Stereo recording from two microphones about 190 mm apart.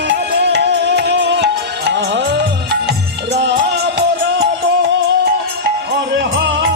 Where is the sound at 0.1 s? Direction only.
65° right (ahead or behind).